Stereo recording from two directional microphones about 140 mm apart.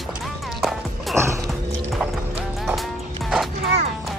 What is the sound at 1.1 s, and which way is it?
Music, 20° right (ahead or behind).